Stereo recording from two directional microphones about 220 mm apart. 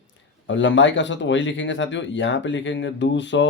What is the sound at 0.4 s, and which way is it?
Speech, 55° left (ahead or behind).